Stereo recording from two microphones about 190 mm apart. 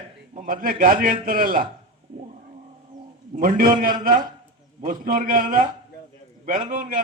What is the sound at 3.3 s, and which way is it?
A man's voice, 45° right (ahead or behind).